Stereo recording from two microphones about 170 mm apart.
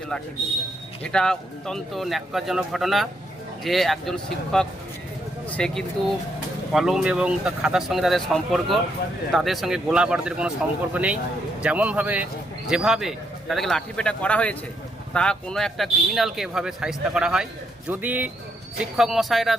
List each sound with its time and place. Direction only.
1.0 s a man's voice: 5° left (ahead or behind)